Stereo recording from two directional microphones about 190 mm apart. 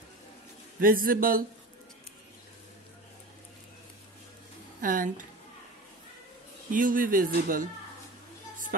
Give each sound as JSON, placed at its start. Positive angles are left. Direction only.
{"t": 0.7, "sound": "speech", "side_deg": -50}
{"t": 4.8, "sound": "speech", "side_deg": -45}
{"t": 6.7, "sound": "speech", "side_deg": -45}